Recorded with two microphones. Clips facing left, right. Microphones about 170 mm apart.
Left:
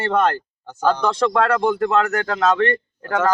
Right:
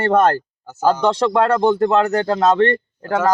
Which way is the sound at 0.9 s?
30° right (ahead or behind).